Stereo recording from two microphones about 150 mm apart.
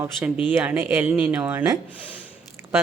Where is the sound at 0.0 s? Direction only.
15° right (ahead or behind).